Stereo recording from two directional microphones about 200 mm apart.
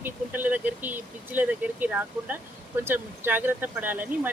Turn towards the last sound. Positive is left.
turn(degrees=-10)  # may be behind; listen again after turning